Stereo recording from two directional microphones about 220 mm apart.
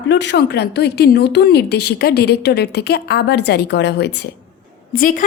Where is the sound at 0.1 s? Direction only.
50° left (ahead or behind).